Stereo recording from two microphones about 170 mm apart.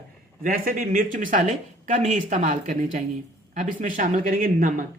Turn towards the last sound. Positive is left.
turn(degrees=-50)  # may be behind; listen again after turning